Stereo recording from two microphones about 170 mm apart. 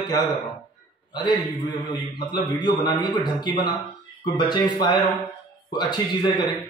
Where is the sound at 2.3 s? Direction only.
25° left (ahead or behind).